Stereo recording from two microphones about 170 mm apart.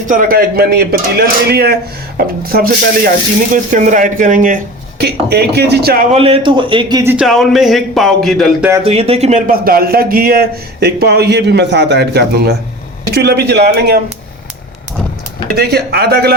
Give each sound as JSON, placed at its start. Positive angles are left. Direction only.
{"t": 0.1, "sound": "speech", "side_deg": -55}
{"t": 3.5, "sound": "speech", "side_deg": -45}
{"t": 4.9, "sound": "speech", "side_deg": -75}
{"t": 6.1, "sound": "a man's voice", "side_deg": -35}
{"t": 7.1, "sound": "speech", "side_deg": 0}
{"t": 8.8, "sound": "speech", "side_deg": -35}
{"t": 9.5, "sound": "speech", "side_deg": -60}
{"t": 15.5, "sound": "speech", "side_deg": -70}